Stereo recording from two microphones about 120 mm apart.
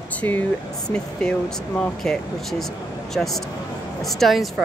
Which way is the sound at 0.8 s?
5° left (ahead or behind).